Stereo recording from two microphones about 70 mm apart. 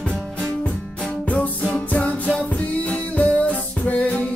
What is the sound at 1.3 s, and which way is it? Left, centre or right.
Music, centre.